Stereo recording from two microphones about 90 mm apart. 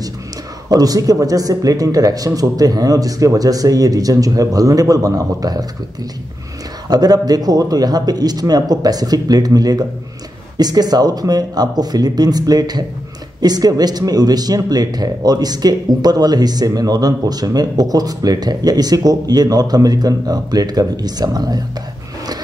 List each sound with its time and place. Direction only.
0.7 s a man's voice: 45° right (ahead or behind)
6.9 s speech: 45° right (ahead or behind)